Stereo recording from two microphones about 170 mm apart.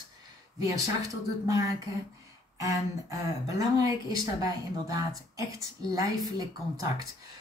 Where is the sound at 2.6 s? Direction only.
20° right (ahead or behind).